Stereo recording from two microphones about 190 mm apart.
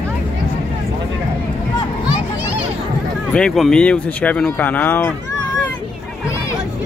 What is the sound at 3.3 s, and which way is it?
Speech, centre (ahead or behind).